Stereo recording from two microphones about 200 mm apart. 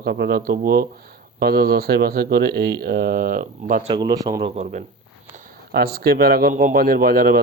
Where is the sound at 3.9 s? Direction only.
20° right (ahead or behind).